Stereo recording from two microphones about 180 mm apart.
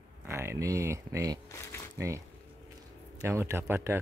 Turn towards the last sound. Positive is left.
turn(degrees=-15)  # may be behind; listen again after turning